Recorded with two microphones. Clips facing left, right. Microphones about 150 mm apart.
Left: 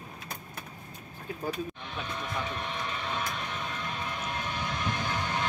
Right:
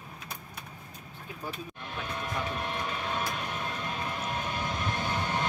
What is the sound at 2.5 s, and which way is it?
Train, 5° right (ahead or behind).